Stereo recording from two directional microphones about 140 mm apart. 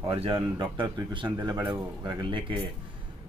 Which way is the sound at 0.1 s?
40° right (ahead or behind).